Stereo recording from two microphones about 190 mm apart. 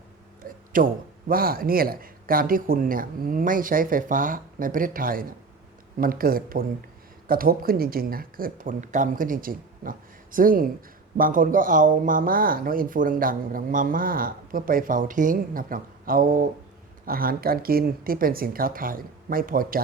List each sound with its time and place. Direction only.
0.4 s speech: 45° right (ahead or behind)